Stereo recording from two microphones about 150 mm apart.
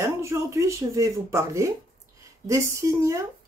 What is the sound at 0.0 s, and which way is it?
Speech, 20° right (ahead or behind).